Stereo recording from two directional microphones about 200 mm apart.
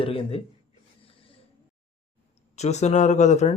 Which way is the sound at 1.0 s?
25° left (ahead or behind).